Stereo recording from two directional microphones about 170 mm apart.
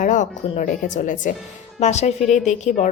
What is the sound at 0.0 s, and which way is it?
A woman's voice, 50° left (ahead or behind).